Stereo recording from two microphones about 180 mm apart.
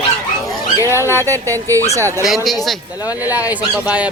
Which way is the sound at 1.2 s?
15° right (ahead or behind).